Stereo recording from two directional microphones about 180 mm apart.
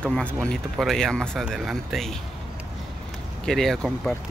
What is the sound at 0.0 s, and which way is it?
Speech, 5° left (ahead or behind).